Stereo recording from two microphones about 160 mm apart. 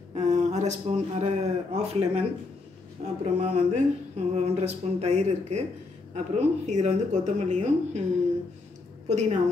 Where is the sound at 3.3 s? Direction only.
45° right (ahead or behind).